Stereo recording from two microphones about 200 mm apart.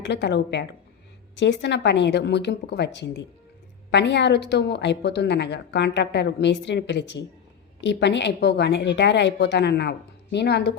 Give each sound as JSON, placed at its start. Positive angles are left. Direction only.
{"t": 0.0, "sound": "a woman's voice", "side_deg": 60}